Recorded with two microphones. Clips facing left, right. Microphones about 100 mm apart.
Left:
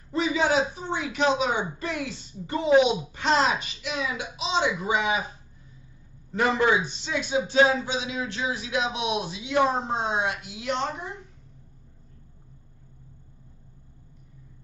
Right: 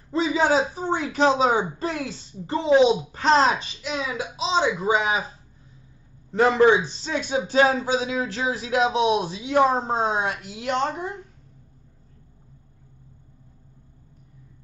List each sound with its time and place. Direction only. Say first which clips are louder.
0.1 s a man's voice: right 3 dB; 30° right (ahead or behind)
6.3 s a man's voice: right 5 dB; 30° right (ahead or behind); by 11.1 s 50° right (ahead or behind)